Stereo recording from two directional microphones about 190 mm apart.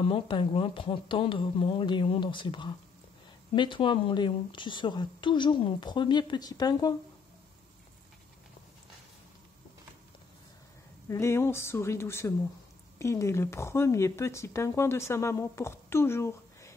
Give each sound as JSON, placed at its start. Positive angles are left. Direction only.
{"t": 0.0, "sound": "a woman's voice", "side_deg": 25}
{"t": 11.1, "sound": "speech", "side_deg": 15}